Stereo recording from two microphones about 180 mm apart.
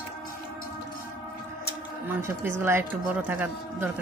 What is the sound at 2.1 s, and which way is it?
Speech, 15° right (ahead or behind).